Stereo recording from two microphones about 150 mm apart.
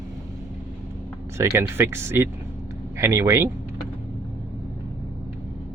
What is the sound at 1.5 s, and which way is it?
Speech, 15° right (ahead or behind).